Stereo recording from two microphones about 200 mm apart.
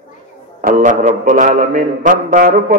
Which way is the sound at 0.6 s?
40° right (ahead or behind).